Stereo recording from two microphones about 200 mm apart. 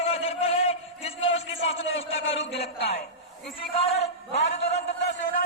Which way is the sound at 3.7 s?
30° left (ahead or behind).